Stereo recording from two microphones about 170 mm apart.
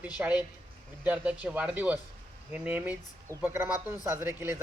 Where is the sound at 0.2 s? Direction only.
10° right (ahead or behind).